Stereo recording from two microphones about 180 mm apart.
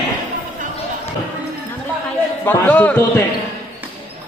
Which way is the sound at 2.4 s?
10° left (ahead or behind).